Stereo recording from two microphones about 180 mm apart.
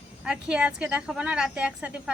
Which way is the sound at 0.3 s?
5° right (ahead or behind).